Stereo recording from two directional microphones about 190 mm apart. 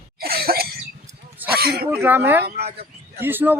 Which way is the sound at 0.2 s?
55° right (ahead or behind).